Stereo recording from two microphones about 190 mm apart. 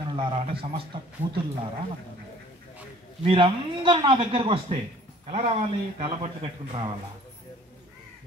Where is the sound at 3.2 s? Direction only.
25° right (ahead or behind).